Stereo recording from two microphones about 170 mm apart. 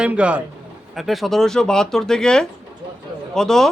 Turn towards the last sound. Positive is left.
turn(degrees=5)  # may be behind; listen again after turning